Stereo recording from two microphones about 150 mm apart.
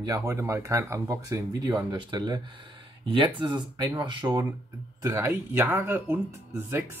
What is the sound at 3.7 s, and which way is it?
Speech, 20° right (ahead or behind).